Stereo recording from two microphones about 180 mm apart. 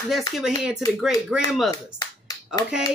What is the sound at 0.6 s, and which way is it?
Speech, centre (ahead or behind).